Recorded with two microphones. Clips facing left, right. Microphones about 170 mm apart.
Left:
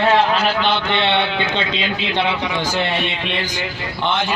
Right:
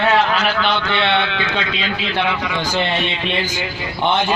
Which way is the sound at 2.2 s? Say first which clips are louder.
Even; 25° left (ahead or behind).